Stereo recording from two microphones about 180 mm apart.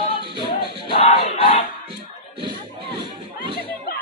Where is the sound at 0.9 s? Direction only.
35° left (ahead or behind).